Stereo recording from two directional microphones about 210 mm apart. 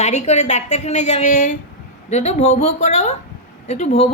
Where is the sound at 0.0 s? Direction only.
30° left (ahead or behind).